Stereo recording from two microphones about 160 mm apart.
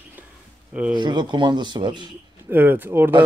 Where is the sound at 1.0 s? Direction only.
30° right (ahead or behind).